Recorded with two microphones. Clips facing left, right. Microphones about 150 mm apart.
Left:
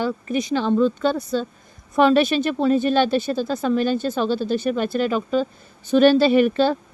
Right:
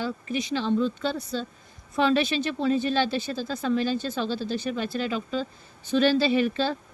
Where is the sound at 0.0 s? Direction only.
45° left (ahead or behind).